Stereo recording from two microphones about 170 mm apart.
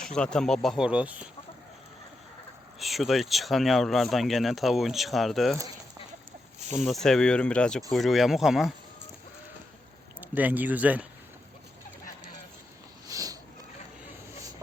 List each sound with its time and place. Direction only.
0.0 s speech: 5° left (ahead or behind)
2.7 s speech: centre (ahead or behind)
6.7 s speech: centre (ahead or behind)
10.2 s speech: 10° right (ahead or behind)
13.1 s a sound: 20° right (ahead or behind)